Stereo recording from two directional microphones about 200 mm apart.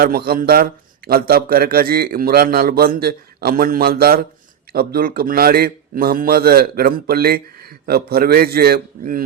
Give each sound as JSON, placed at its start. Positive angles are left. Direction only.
{"t": 0.0, "sound": "a man's voice", "side_deg": -50}